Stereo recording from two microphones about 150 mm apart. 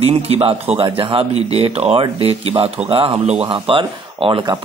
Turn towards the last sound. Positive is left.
turn(degrees=-30)  # may be behind; listen again after turning